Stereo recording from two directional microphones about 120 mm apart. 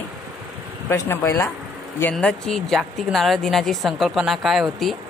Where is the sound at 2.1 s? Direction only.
5° left (ahead or behind).